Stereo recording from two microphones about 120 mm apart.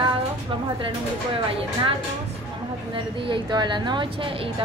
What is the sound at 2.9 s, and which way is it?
A woman's voice, 45° right (ahead or behind).